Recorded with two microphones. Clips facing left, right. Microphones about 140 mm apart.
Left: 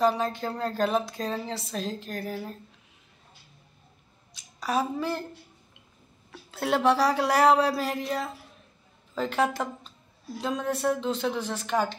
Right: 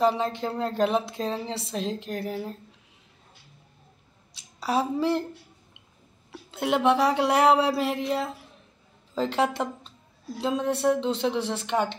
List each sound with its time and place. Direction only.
0.0 s a woman's voice: 25° right (ahead or behind)
4.6 s a woman's voice: 25° right (ahead or behind)
6.3 s a woman's voice: 20° right (ahead or behind)